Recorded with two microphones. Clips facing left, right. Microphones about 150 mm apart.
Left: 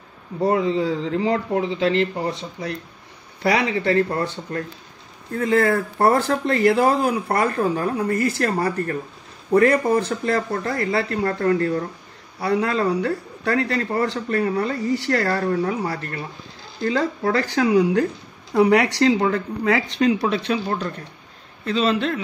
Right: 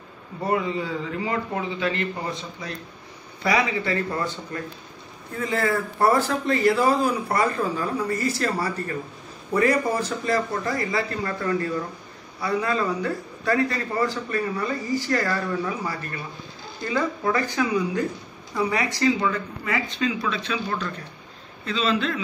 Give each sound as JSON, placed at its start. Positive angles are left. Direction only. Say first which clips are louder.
{"t": 0.5, "sound": "a man's voice", "louder": "left 5 dB", "side_deg": 90}
{"t": 20.5, "sound": "speech", "louder": "left 4 dB", "side_deg": 40}